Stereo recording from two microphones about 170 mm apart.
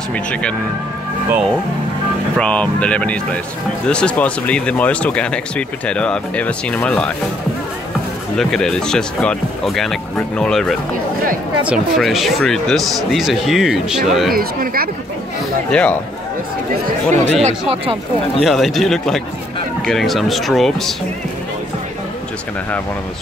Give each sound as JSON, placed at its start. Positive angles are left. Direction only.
{"t": 0.1, "sound": "speech", "side_deg": 5}
{"t": 2.3, "sound": "speech", "side_deg": 5}
{"t": 8.4, "sound": "speech", "side_deg": 5}
{"t": 14.3, "sound": "speech", "side_deg": -60}
{"t": 15.7, "sound": "speech", "side_deg": 5}
{"t": 16.8, "sound": "speech", "side_deg": -45}
{"t": 18.4, "sound": "speech", "side_deg": 0}